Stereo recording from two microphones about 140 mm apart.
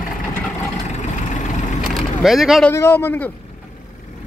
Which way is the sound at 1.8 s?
Centre (ahead or behind).